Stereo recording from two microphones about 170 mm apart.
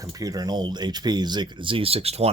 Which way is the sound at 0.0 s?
20° right (ahead or behind).